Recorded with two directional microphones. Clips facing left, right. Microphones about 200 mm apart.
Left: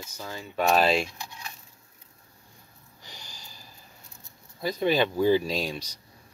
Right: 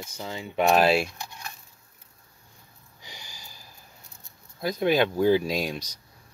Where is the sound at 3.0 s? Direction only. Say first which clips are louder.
Right 1 dB; 10° right (ahead or behind).